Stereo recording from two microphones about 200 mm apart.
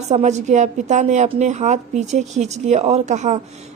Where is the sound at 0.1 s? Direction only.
35° right (ahead or behind).